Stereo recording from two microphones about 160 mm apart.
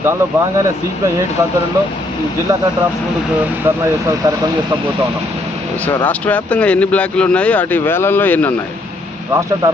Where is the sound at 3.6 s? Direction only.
20° right (ahead or behind).